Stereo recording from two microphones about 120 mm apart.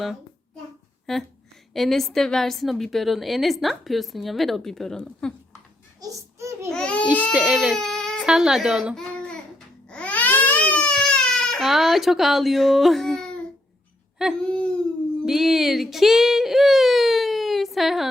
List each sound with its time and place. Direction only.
1.1 s a woman's voice: 5° left (ahead or behind)
6.0 s a sound: 25° right (ahead or behind)
6.7 s babbling: 5° left (ahead or behind)
7.3 s a woman's voice: 5° right (ahead or behind)
9.1 s a sound: 5° left (ahead or behind)
9.9 s baby cry: 10° left (ahead or behind)
14.4 s speech: 10° left (ahead or behind)
15.3 s speech: 5° right (ahead or behind)